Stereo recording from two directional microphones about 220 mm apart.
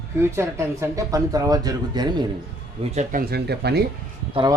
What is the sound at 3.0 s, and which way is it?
Speech, 45° right (ahead or behind).